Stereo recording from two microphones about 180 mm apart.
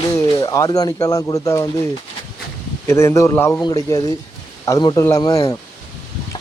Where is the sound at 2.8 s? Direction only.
15° left (ahead or behind).